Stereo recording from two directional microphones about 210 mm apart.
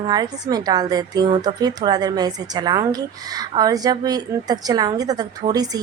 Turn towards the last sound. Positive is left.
turn(degrees=-20)  # may be behind; listen again after turning